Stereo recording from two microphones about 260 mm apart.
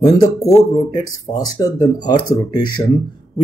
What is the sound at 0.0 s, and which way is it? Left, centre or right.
Speech, centre.